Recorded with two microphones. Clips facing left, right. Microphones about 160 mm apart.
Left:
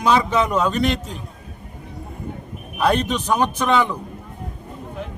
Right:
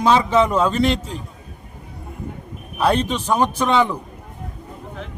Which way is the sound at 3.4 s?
5° right (ahead or behind).